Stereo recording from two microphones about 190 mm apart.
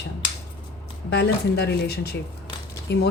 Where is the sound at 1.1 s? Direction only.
60° left (ahead or behind).